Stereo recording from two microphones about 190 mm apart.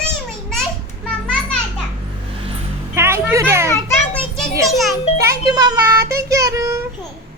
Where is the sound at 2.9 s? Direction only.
15° right (ahead or behind).